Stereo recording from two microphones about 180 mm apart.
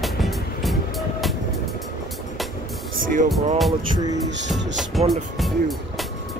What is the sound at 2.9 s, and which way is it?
Music, 50° right (ahead or behind).